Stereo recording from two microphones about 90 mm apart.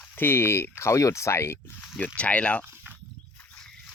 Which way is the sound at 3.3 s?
10° left (ahead or behind).